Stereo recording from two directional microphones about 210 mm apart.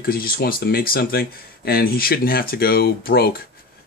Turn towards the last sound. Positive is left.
turn(degrees=45)  # may be behind; listen again after turning